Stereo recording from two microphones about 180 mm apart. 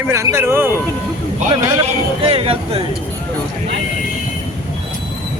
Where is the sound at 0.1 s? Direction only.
15° right (ahead or behind).